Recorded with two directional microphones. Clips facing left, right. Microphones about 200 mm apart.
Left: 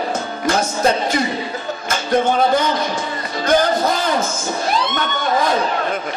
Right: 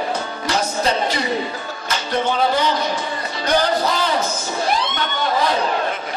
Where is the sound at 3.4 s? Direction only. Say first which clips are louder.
Left 3 dB; 50° left (ahead or behind).